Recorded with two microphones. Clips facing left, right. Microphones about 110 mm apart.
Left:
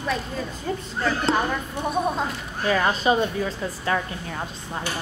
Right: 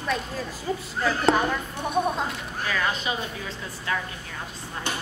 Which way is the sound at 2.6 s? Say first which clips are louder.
Left 7 dB; 35° left (ahead or behind).